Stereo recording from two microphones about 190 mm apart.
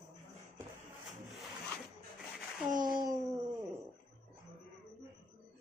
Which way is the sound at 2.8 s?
20° right (ahead or behind).